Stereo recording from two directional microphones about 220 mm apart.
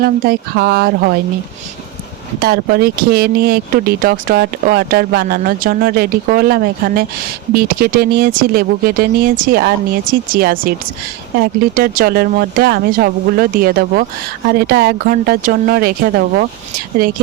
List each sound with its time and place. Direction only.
0.0 s speech: 45° right (ahead or behind)
2.4 s speech: 45° right (ahead or behind)